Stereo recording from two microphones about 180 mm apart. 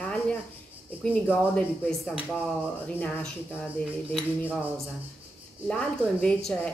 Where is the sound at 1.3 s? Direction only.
5° left (ahead or behind).